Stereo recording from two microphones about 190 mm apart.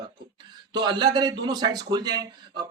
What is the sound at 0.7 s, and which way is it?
Speech, 25° right (ahead or behind).